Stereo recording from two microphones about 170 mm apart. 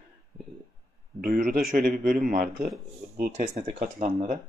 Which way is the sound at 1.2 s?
55° right (ahead or behind).